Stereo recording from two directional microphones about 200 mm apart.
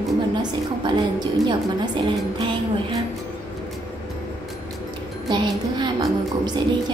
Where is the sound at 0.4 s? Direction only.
20° right (ahead or behind).